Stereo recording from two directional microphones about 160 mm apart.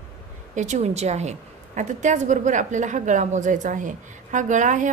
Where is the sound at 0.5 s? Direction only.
45° right (ahead or behind).